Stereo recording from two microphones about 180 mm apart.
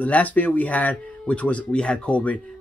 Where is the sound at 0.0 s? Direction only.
10° left (ahead or behind).